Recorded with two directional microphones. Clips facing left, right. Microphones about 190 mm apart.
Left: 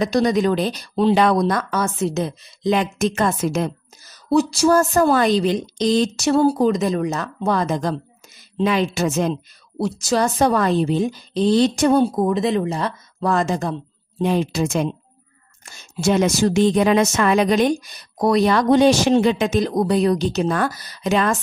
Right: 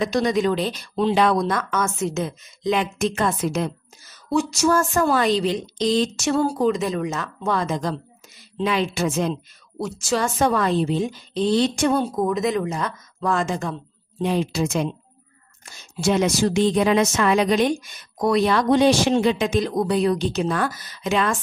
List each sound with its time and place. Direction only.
0.0 s a woman's voice: 40° left (ahead or behind)
14.2 s a woman's voice: 50° left (ahead or behind)
16.0 s a woman's voice: 50° left (ahead or behind)